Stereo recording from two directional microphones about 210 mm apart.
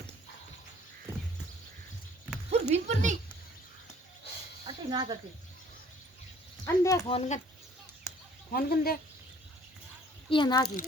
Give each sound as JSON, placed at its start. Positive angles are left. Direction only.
{"t": 2.5, "sound": "a sound", "side_deg": -30}
{"t": 4.6, "sound": "snake", "side_deg": -20}
{"t": 6.7, "sound": "speech", "side_deg": 15}
{"t": 7.1, "sound": "speech", "side_deg": 35}
{"t": 8.5, "sound": "speech", "side_deg": 45}
{"t": 10.2, "sound": "a child's voice", "side_deg": 20}